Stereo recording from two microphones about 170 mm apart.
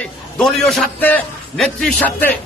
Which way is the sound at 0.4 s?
Centre (ahead or behind).